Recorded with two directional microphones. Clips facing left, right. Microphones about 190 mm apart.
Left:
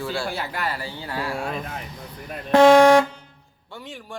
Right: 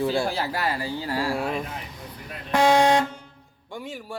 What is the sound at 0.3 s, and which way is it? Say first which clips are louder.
Speech: right 2 dB; 35° right (ahead or behind).